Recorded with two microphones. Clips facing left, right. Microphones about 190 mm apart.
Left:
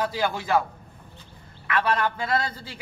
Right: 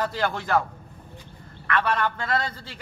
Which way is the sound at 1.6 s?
10° left (ahead or behind).